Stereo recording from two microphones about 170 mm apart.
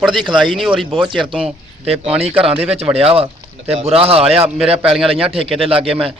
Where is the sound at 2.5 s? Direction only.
35° right (ahead or behind).